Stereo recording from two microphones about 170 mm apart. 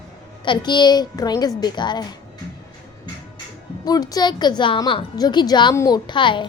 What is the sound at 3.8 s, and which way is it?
A woman's voice, 20° left (ahead or behind).